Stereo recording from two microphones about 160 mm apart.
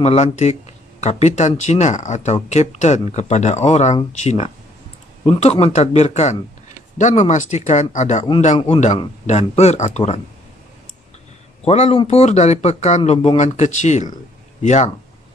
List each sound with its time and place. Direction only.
0.0 s speech: 45° left (ahead or behind)
11.6 s speech: 40° left (ahead or behind)